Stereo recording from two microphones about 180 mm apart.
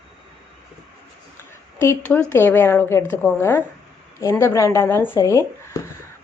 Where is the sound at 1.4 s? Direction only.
15° left (ahead or behind).